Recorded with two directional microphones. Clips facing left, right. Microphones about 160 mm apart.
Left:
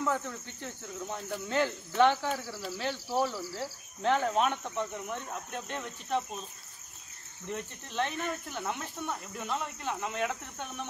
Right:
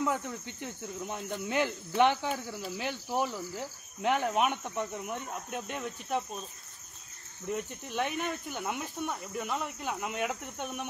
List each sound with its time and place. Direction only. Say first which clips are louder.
0.0 s speech: even; 15° right (ahead or behind)
7.4 s speech: right 3 dB; 10° right (ahead or behind)